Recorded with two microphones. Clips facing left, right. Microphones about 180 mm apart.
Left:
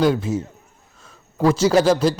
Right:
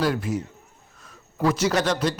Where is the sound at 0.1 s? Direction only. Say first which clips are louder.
Left 4 dB; 25° left (ahead or behind).